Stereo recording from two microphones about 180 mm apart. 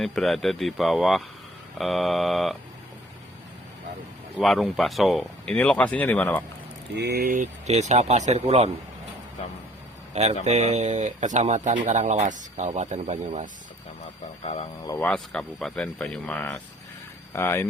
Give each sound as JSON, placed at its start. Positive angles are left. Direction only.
{"t": 0.0, "sound": "speech", "side_deg": 0}
{"t": 4.4, "sound": "speech", "side_deg": 0}
{"t": 6.9, "sound": "speech", "side_deg": -65}
{"t": 10.4, "sound": "speech", "side_deg": -40}
{"t": 14.8, "sound": "speech", "side_deg": 10}